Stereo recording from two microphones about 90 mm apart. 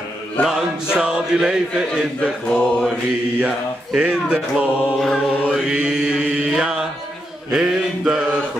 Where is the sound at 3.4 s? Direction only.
15° right (ahead or behind).